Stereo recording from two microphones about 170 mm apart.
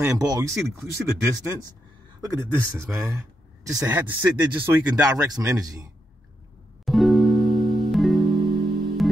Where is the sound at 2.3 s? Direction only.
15° right (ahead or behind).